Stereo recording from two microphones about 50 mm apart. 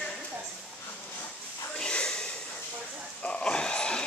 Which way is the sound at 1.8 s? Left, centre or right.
Centre.